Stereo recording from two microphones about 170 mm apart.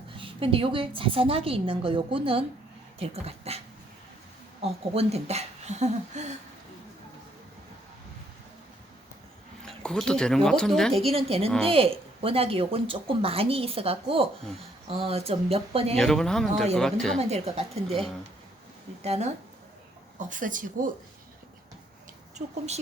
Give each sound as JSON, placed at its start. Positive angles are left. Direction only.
{"t": 0.2, "sound": "speech", "side_deg": -30}
{"t": 4.6, "sound": "speech", "side_deg": -35}
{"t": 9.6, "sound": "speech", "side_deg": 5}
{"t": 11.0, "sound": "speech", "side_deg": -35}
{"t": 16.0, "sound": "speech", "side_deg": 5}
{"t": 17.2, "sound": "speech", "side_deg": -40}
{"t": 19.0, "sound": "speech", "side_deg": -40}
{"t": 20.1, "sound": "speech", "side_deg": -50}
{"t": 22.4, "sound": "speech", "side_deg": -40}